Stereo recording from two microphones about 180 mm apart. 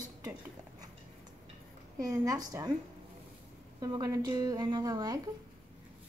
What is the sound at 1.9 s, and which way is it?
Speech, 20° right (ahead or behind).